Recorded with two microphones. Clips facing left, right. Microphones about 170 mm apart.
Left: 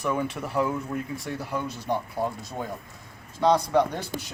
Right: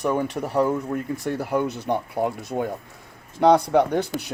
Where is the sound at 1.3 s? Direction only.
60° right (ahead or behind).